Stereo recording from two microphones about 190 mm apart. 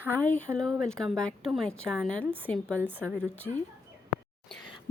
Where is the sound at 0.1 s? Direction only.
5° left (ahead or behind).